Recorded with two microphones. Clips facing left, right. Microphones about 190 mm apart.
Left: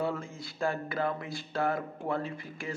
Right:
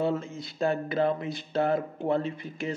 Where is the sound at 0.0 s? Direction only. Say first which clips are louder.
Right 5 dB; 20° right (ahead or behind).